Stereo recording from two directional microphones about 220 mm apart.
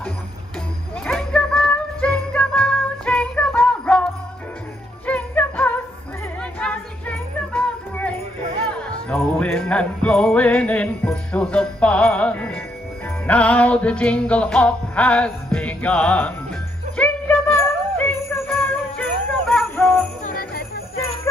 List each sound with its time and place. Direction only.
1.0 s music: 5° left (ahead or behind)
16.9 s jingle bell: 5° left (ahead or behind)
20.2 s jingle bell: 45° left (ahead or behind)